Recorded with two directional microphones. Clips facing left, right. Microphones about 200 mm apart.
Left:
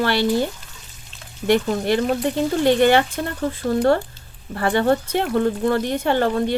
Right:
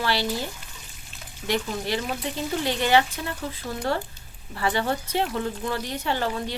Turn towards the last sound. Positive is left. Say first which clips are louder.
# left 8 dB
turn(degrees=55)  # may be behind; listen again after turning